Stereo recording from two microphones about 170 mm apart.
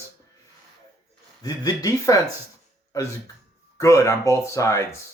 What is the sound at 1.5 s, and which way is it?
Speech, 20° left (ahead or behind).